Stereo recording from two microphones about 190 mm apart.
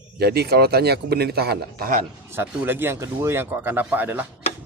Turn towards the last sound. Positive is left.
turn(degrees=-10)  # may be behind; listen again after turning